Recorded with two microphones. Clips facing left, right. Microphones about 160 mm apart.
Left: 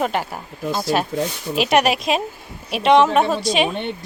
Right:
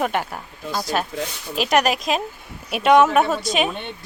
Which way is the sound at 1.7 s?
5° left (ahead or behind).